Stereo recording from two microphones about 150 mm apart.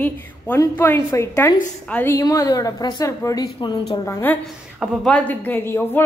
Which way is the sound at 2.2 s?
25° left (ahead or behind).